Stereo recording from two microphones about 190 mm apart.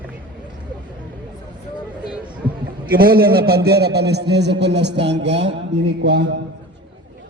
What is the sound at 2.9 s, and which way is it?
A man's voice, 50° right (ahead or behind).